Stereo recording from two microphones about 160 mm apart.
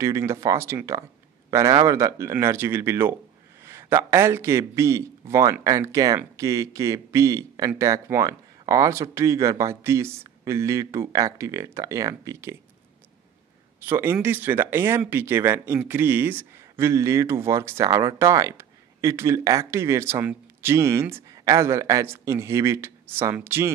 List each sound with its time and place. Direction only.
0.0 s speech: 15° right (ahead or behind)
13.7 s speech: 10° right (ahead or behind)